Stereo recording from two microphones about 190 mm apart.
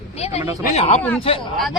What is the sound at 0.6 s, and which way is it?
Speech, 35° left (ahead or behind).